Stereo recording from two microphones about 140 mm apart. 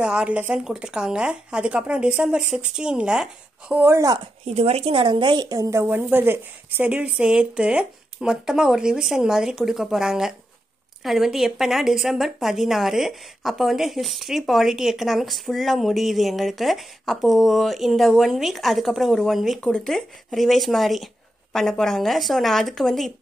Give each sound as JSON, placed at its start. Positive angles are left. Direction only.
{"t": 0.0, "sound": "speech", "side_deg": -5}
{"t": 3.8, "sound": "a woman's voice", "side_deg": -20}
{"t": 4.5, "sound": "a woman's voice", "side_deg": -50}